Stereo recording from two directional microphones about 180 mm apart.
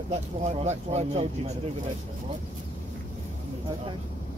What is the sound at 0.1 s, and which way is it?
Speech, 35° right (ahead or behind).